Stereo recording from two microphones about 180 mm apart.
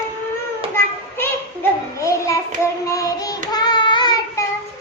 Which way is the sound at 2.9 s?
20° left (ahead or behind).